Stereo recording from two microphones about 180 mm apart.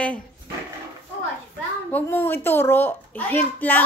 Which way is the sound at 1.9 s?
10° left (ahead or behind).